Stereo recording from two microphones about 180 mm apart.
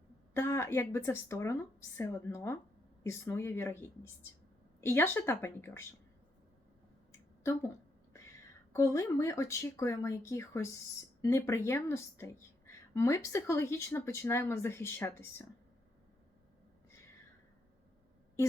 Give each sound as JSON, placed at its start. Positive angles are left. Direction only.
{"t": 0.3, "sound": "a woman's voice", "side_deg": 15}
{"t": 8.7, "sound": "a woman's voice", "side_deg": 15}